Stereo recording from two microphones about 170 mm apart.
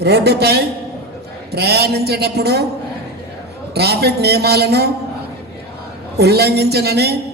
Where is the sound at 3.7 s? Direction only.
70° right (ahead or behind).